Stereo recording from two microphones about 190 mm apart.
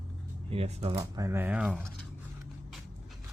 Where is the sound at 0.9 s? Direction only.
15° right (ahead or behind).